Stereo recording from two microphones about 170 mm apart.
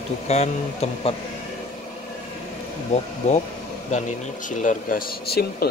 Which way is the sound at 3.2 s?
45° left (ahead or behind).